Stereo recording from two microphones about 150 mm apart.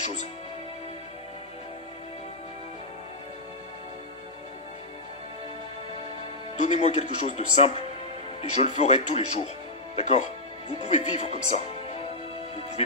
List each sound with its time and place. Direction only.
6.6 s speech: 50° left (ahead or behind)